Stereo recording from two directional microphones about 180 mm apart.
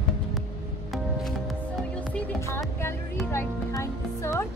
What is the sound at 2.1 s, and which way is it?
Music, 15° left (ahead or behind).